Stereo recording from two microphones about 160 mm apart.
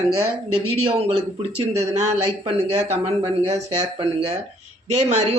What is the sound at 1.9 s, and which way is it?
Speech, 45° right (ahead or behind).